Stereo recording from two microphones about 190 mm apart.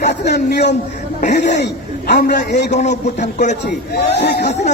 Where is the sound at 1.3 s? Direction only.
65° left (ahead or behind).